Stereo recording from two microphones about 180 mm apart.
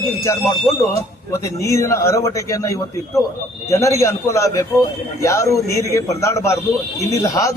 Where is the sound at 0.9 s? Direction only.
15° left (ahead or behind).